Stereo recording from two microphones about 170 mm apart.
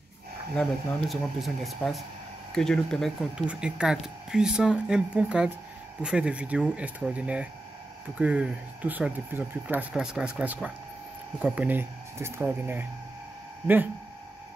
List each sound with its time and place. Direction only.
0.6 s speech: 5° left (ahead or behind)